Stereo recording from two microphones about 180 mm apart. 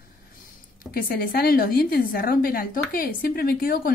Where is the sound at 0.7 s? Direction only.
55° left (ahead or behind).